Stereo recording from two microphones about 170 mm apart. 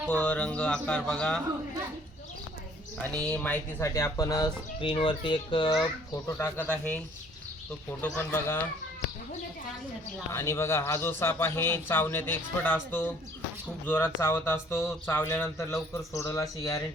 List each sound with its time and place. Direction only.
0.1 s a man's voice: 5° left (ahead or behind)
3.0 s speech: 10° left (ahead or behind); by 5.7 s 30° left (ahead or behind)
6.2 s a man's voice: 15° left (ahead or behind)
8.0 s a man's voice: 10° left (ahead or behind)
10.3 s a man's voice: 15° left (ahead or behind)